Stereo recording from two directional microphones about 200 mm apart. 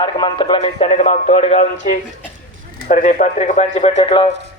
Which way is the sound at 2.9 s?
40° left (ahead or behind).